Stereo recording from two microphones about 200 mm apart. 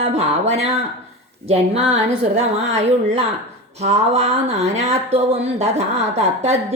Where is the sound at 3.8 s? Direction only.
30° right (ahead or behind).